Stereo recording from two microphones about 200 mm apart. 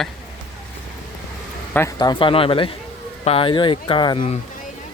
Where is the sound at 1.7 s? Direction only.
15° left (ahead or behind).